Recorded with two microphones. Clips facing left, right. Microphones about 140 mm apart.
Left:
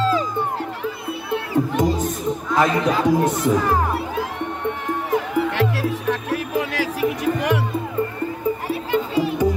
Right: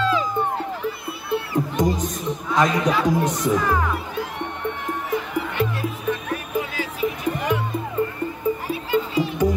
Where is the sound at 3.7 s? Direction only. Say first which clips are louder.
Left 2 dB; 30° left (ahead or behind).